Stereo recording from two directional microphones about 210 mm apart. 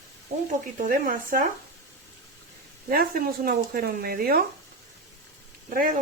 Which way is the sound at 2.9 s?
45° right (ahead or behind).